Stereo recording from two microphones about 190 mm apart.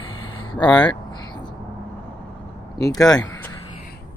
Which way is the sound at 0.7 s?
25° left (ahead or behind).